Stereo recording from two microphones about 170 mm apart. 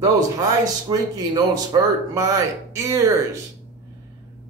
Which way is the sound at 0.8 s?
25° right (ahead or behind).